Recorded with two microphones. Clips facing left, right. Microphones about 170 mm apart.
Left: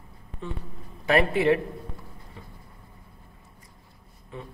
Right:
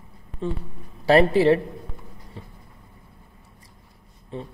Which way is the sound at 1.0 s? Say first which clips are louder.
Right 5 dB; 30° right (ahead or behind).